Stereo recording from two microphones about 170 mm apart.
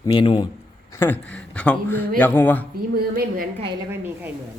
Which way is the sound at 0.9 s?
10° left (ahead or behind).